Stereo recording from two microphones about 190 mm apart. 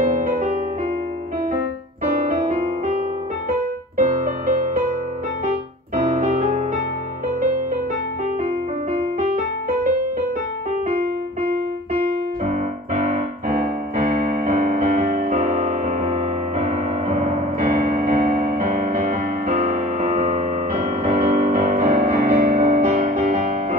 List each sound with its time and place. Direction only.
0.0 s music: 45° right (ahead or behind)
2.0 s piano: 35° right (ahead or behind)
4.0 s music: 45° right (ahead or behind)
12.4 s piano: 45° right (ahead or behind)